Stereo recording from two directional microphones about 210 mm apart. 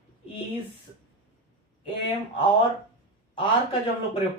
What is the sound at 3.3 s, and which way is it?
Speech, 25° left (ahead or behind).